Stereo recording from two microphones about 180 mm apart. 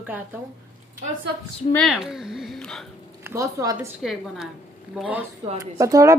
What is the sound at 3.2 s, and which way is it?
Speech, 15° right (ahead or behind).